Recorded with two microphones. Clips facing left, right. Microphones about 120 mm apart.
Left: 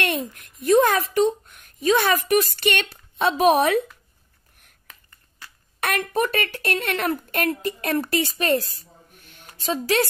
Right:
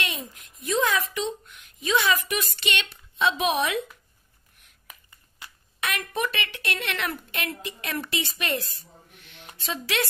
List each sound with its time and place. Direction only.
0.0 s a woman's voice: 55° left (ahead or behind)
4.8 s a sound: 10° right (ahead or behind)
5.8 s a woman's voice: 45° left (ahead or behind)